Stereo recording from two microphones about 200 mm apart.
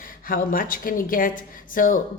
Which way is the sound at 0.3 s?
45° left (ahead or behind).